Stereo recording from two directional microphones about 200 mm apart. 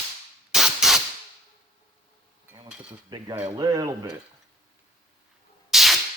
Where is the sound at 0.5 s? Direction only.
Centre (ahead or behind).